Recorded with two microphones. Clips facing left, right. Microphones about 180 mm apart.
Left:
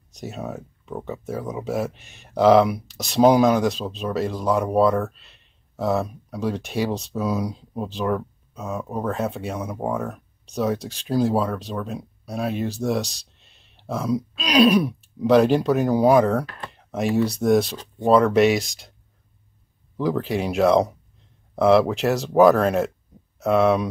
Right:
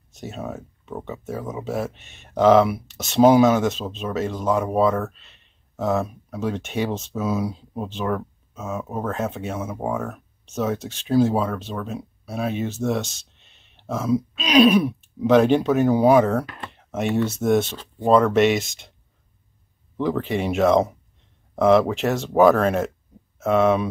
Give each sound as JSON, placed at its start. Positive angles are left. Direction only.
{"t": 0.1, "sound": "speech", "side_deg": 0}
{"t": 13.0, "sound": "speech", "side_deg": 35}
{"t": 13.4, "sound": "speech", "side_deg": 0}
{"t": 20.1, "sound": "speech", "side_deg": 0}